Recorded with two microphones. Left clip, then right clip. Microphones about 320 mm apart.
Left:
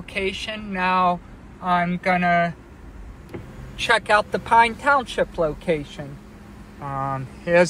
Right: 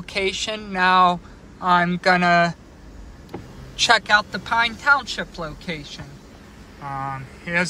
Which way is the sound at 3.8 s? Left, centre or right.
Centre.